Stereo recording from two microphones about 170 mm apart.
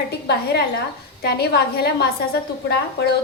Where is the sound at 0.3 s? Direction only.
70° left (ahead or behind).